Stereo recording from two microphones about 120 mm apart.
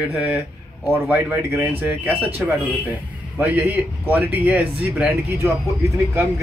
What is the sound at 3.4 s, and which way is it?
Speech, 15° right (ahead or behind).